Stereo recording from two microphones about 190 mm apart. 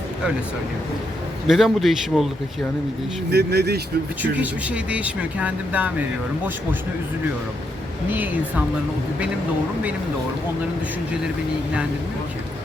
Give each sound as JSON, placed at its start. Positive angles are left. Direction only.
{"t": 1.5, "sound": "speech", "side_deg": 0}
{"t": 3.2, "sound": "speech", "side_deg": -60}
{"t": 4.2, "sound": "speech", "side_deg": -5}